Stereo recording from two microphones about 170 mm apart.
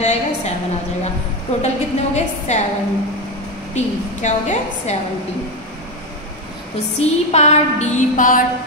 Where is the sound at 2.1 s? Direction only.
45° left (ahead or behind).